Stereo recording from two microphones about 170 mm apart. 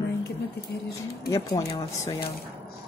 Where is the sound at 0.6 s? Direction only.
70° left (ahead or behind).